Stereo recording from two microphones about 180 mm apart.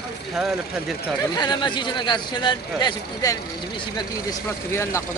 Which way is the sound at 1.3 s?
25° left (ahead or behind).